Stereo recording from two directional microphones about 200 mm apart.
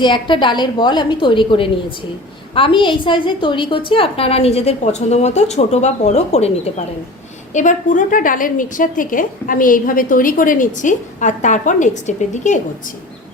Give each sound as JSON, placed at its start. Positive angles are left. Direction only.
{"t": 0.0, "sound": "a woman's voice", "side_deg": 25}